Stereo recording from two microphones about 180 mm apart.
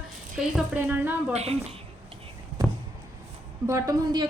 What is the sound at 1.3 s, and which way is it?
Speech, 35° right (ahead or behind).